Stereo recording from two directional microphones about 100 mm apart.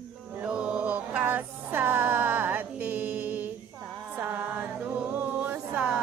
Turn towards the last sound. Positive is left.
turn(degrees=-15)  # may be behind; listen again after turning